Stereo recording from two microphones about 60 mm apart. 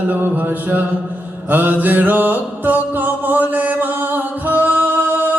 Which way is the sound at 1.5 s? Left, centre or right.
Right.